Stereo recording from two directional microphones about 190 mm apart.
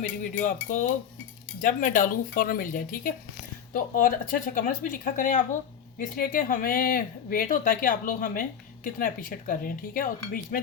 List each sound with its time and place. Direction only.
0.4 s speech: 40° left (ahead or behind)